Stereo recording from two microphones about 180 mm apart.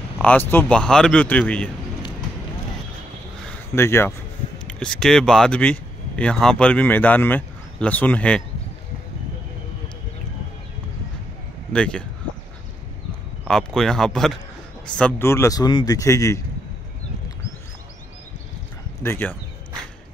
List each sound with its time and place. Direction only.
0.2 s speech: 10° left (ahead or behind)
3.7 s speech: 15° left (ahead or behind)
11.7 s speech: 5° left (ahead or behind)
13.5 s speech: 5° left (ahead or behind)
19.0 s speech: 10° left (ahead or behind)